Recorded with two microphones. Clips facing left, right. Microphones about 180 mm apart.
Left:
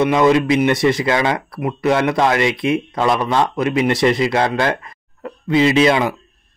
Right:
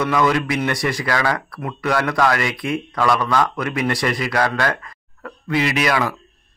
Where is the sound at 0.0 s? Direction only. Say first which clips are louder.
Left 5 dB; 25° left (ahead or behind).